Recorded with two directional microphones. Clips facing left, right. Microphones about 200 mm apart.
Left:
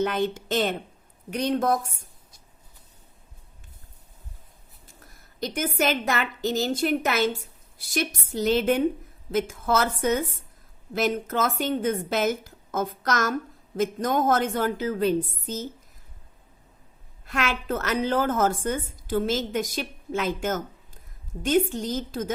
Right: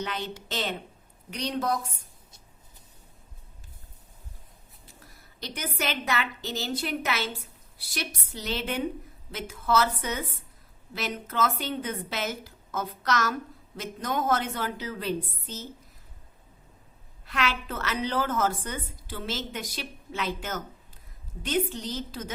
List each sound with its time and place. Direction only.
0.0 s a woman's voice: 50° left (ahead or behind)
5.4 s a woman's voice: 50° left (ahead or behind)
17.2 s a woman's voice: 50° left (ahead or behind)